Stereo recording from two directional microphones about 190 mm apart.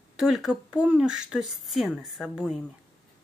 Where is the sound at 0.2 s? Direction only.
Centre (ahead or behind).